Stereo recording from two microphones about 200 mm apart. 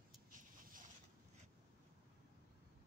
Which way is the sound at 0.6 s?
45° right (ahead or behind).